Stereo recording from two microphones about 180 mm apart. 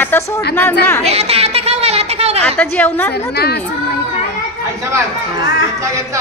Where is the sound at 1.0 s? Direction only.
35° right (ahead or behind).